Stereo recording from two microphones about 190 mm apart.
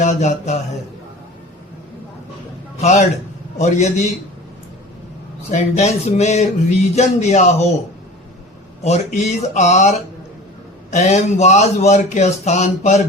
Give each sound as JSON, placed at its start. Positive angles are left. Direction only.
{"t": 0.0, "sound": "speech", "side_deg": 40}
{"t": 2.8, "sound": "speech", "side_deg": 35}
{"t": 5.5, "sound": "speech", "side_deg": 35}
{"t": 8.8, "sound": "speech", "side_deg": 35}
{"t": 10.9, "sound": "speech", "side_deg": 35}